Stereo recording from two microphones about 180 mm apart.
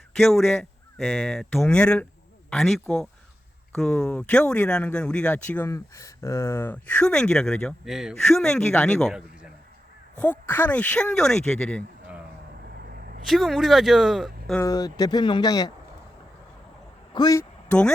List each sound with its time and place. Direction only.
0.2 s speech: centre (ahead or behind)
10.2 s speech: 10° left (ahead or behind)
12.7 s a sound: 60° right (ahead or behind)
13.2 s speech: centre (ahead or behind)
14.6 s speech: 20° left (ahead or behind)
17.2 s speech: 20° left (ahead or behind)
17.7 s speech: 5° left (ahead or behind)